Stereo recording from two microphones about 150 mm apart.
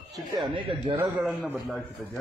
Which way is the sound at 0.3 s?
30° right (ahead or behind).